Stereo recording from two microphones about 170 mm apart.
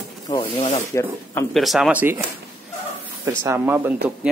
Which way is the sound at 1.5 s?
Centre (ahead or behind).